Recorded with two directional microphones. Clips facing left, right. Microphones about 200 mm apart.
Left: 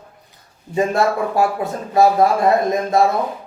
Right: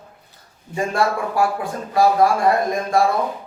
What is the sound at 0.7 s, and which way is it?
A man's voice, 25° left (ahead or behind).